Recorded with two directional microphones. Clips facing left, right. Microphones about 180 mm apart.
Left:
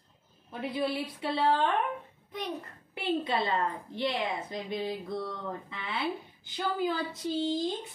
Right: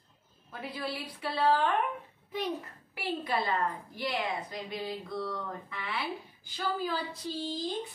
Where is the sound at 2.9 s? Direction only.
25° left (ahead or behind).